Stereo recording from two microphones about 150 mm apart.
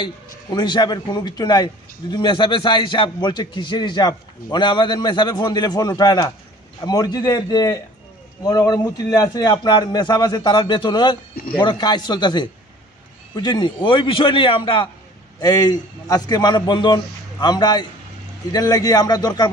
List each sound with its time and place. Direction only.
0.6 s a man's voice: 30° left (ahead or behind)